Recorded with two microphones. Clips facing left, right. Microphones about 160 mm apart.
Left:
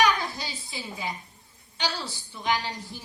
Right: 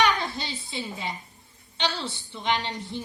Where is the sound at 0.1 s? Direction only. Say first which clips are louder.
Even; 25° right (ahead or behind).